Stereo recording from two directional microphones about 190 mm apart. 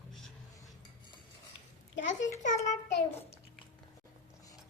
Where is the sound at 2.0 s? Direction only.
40° left (ahead or behind).